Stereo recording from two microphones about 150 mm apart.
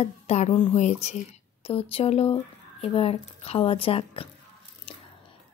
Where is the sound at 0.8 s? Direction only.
45° left (ahead or behind).